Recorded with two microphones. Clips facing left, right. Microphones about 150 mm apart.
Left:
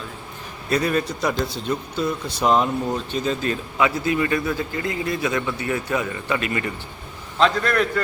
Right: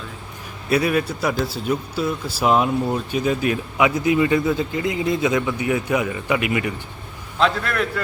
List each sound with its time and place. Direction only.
0.7 s a man's voice: 5° right (ahead or behind)